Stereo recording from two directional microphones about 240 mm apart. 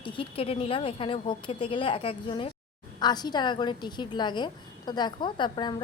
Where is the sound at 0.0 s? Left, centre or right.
Left.